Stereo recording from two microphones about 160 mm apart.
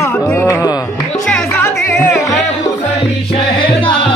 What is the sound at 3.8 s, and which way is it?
Music, 35° left (ahead or behind).